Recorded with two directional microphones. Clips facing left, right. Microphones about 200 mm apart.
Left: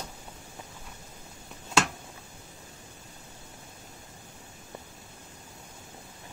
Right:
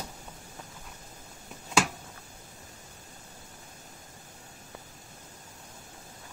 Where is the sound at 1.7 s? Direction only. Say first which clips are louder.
Even; 5° right (ahead or behind).